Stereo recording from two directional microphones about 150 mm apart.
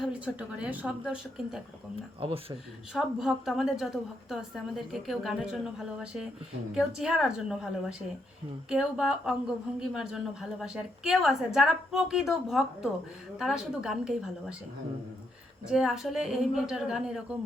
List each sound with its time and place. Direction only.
0.0 s a woman's voice: 5° right (ahead or behind)
2.2 s speech: 35° right (ahead or behind)
2.9 s a woman's voice: centre (ahead or behind)
15.6 s a woman's voice: 5° right (ahead or behind)